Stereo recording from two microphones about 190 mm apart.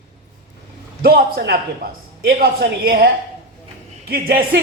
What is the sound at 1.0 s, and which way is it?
A man's voice, 55° right (ahead or behind).